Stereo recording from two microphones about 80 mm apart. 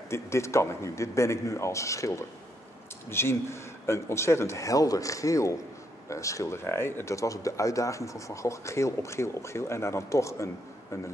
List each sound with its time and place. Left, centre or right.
0.1 s speech: left